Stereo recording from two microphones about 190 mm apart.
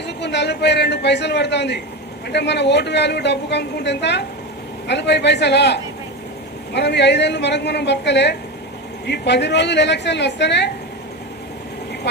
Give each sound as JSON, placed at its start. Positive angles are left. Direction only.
{"t": 0.2, "sound": "a woman's voice", "side_deg": 65}